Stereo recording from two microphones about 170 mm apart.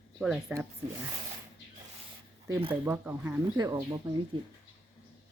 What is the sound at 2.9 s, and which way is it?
A woman's voice, 15° right (ahead or behind).